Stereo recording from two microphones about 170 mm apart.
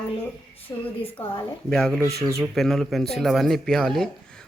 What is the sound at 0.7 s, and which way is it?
Speech, 20° left (ahead or behind).